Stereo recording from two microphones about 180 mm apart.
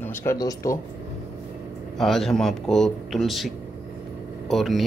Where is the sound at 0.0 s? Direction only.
15° left (ahead or behind).